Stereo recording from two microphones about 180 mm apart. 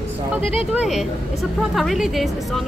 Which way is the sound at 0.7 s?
5° right (ahead or behind).